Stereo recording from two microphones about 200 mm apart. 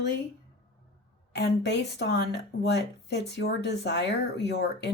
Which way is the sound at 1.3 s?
60° left (ahead or behind).